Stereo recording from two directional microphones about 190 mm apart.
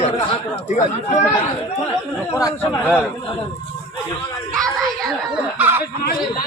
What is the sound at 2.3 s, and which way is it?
Speech, 15° left (ahead or behind).